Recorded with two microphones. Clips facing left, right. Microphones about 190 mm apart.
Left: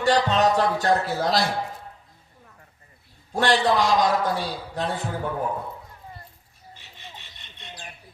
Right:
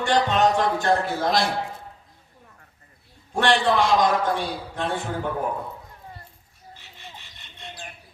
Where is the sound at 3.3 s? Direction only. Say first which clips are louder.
Even; 35° left (ahead or behind).